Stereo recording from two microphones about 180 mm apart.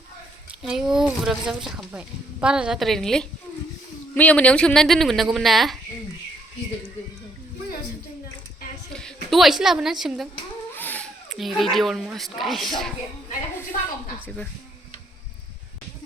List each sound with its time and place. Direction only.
0.6 s speech: centre (ahead or behind)
9.3 s speech: centre (ahead or behind)
10.8 s a sound: 10° left (ahead or behind)
11.3 s speech: centre (ahead or behind)